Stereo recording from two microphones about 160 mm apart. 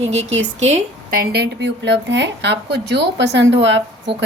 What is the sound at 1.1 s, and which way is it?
A woman's voice, 75° right (ahead or behind).